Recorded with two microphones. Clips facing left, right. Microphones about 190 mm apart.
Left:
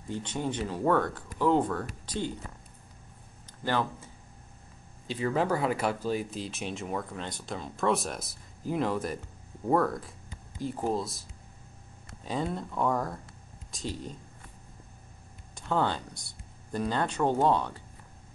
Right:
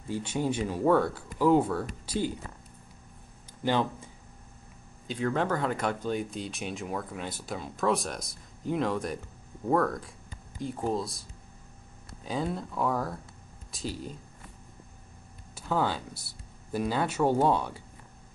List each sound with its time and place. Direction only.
0.1 s speech: 10° right (ahead or behind)
3.6 s speech: 15° right (ahead or behind)
5.0 s speech: centre (ahead or behind)
15.5 s speech: 5° right (ahead or behind)